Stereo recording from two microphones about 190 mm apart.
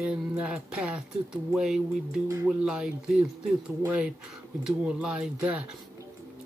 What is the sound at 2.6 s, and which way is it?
Speech, 5° right (ahead or behind).